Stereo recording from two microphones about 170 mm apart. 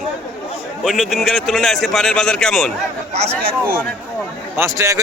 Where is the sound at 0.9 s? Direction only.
Centre (ahead or behind).